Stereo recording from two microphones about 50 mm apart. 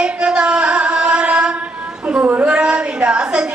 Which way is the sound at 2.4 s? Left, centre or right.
Centre.